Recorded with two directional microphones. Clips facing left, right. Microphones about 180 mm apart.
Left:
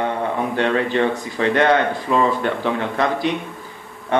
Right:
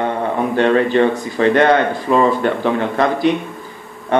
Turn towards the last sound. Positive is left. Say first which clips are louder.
# right 4 dB
turn(degrees=-45)  # may be behind; listen again after turning